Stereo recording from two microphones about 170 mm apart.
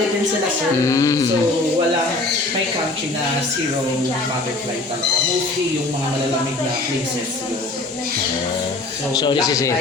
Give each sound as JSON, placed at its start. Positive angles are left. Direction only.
{"t": 0.9, "sound": "a man's voice", "side_deg": 20}
{"t": 9.1, "sound": "a man's voice", "side_deg": 25}